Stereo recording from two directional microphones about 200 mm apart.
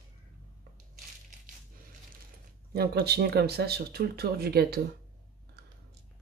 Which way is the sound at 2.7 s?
50° right (ahead or behind).